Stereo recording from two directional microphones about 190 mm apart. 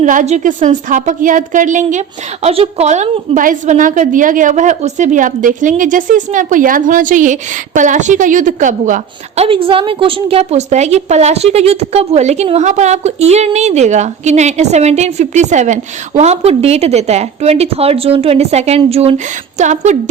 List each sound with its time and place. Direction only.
0.0 s a woman's voice: 40° right (ahead or behind)